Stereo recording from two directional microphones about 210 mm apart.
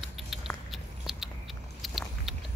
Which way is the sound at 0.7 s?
Centre (ahead or behind).